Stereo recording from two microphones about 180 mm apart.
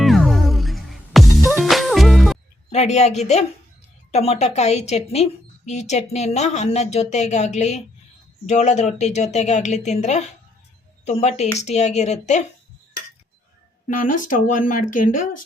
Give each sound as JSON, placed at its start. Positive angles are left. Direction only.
{"t": 0.0, "sound": "music", "side_deg": 0}
{"t": 2.7, "sound": "a woman's voice", "side_deg": 40}
{"t": 13.8, "sound": "a woman's voice", "side_deg": 50}